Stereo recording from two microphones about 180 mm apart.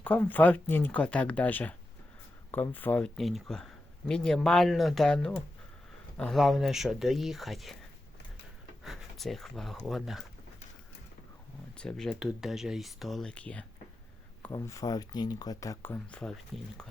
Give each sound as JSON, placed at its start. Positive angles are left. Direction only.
{"t": 0.0, "sound": "speech", "side_deg": 10}
{"t": 8.8, "sound": "speech", "side_deg": 0}
{"t": 11.8, "sound": "speech", "side_deg": 5}